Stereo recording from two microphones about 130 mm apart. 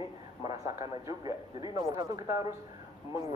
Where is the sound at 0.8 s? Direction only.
25° right (ahead or behind).